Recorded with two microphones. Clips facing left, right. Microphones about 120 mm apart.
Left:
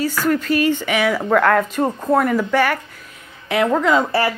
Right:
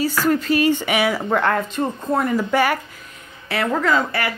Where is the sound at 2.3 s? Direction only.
10° right (ahead or behind).